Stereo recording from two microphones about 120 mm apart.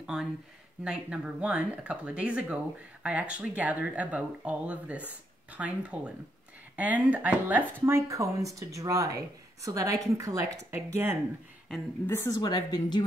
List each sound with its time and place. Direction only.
0.0 s speech: 5° right (ahead or behind); by 11.1 s 20° right (ahead or behind)
12.1 s a woman's voice: 20° left (ahead or behind)
12.4 s a woman's voice: 35° left (ahead or behind)